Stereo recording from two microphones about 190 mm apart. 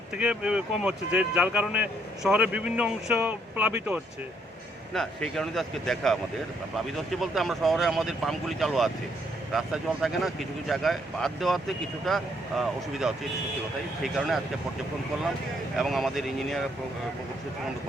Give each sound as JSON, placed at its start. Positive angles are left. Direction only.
{"t": 0.2, "sound": "speech", "side_deg": -5}
{"t": 4.9, "sound": "speech", "side_deg": 5}
{"t": 15.8, "sound": "speech", "side_deg": 0}